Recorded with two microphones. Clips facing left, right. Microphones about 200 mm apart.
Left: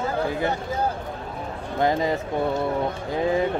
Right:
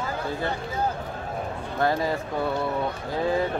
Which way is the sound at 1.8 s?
20° left (ahead or behind).